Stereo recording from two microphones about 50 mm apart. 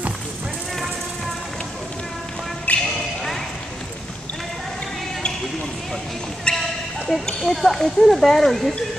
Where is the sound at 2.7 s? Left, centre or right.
Left.